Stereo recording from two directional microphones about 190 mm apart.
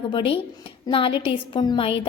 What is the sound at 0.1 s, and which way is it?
A woman's voice, 25° left (ahead or behind).